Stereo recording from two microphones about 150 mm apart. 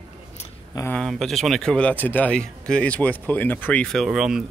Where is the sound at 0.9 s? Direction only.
Centre (ahead or behind).